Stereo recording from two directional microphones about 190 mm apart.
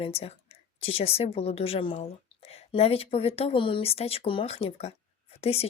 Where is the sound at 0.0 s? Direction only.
30° left (ahead or behind).